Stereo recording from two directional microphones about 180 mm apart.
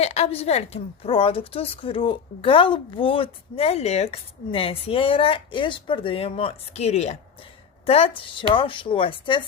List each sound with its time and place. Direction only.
0.0 s a woman's voice: 35° left (ahead or behind)